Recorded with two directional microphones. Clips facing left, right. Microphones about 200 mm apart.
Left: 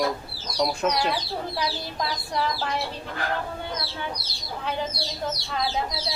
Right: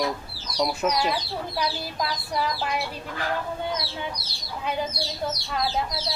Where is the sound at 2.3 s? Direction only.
10° right (ahead or behind).